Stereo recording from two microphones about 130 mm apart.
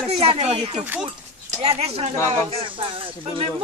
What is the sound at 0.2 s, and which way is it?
Speech, 50° right (ahead or behind).